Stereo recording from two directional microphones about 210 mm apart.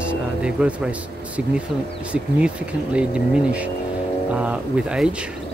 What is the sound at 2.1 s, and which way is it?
Speech, 5° right (ahead or behind).